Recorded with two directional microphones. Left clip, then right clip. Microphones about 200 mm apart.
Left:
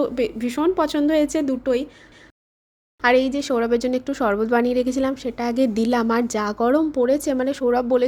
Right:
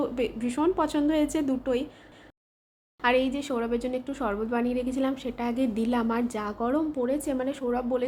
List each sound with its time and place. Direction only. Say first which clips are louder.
0.0 s speech: left 6 dB; 30° left (ahead or behind)
3.0 s speech: left 7 dB; 35° left (ahead or behind)